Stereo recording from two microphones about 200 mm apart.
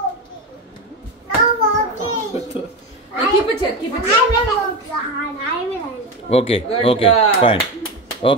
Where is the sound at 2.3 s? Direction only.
30° left (ahead or behind).